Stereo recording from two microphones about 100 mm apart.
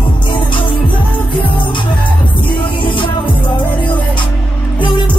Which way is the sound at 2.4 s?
55° left (ahead or behind).